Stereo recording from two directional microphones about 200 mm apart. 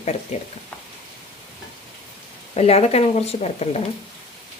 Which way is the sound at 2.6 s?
30° left (ahead or behind).